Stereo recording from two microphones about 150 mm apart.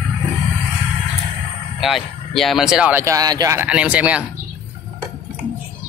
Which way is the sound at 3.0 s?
20° right (ahead or behind).